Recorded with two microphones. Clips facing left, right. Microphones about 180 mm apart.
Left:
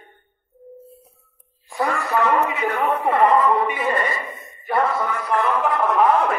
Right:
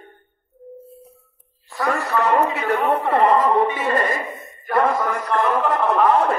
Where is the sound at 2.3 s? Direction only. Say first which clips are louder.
Right 2 dB; 40° right (ahead or behind).